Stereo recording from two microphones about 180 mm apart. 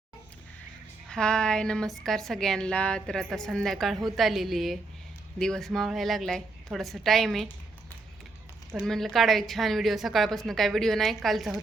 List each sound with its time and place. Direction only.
1.1 s a woman's voice: 5° left (ahead or behind)
8.7 s a woman's voice: centre (ahead or behind)